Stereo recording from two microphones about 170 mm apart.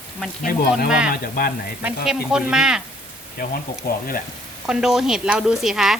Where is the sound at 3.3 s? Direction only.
60° left (ahead or behind).